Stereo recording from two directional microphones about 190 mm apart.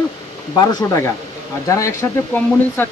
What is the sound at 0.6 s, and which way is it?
Speech, 15° left (ahead or behind).